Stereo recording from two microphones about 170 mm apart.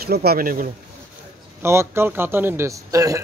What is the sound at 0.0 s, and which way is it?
Speech, 65° right (ahead or behind).